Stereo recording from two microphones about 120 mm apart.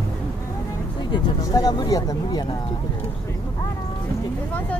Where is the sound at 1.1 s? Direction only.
30° left (ahead or behind).